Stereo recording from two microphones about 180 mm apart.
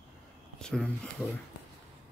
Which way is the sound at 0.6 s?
5° left (ahead or behind).